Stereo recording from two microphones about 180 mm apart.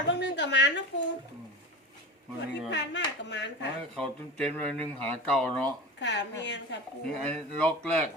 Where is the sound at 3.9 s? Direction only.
5° left (ahead or behind).